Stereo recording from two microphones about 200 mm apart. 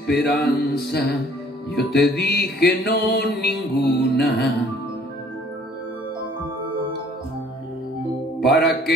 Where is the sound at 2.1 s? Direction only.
55° left (ahead or behind).